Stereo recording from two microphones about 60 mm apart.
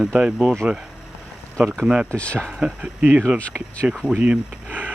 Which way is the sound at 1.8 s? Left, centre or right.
Centre.